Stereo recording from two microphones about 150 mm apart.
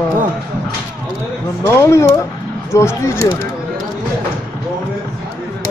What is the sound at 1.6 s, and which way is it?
Speech, 20° left (ahead or behind).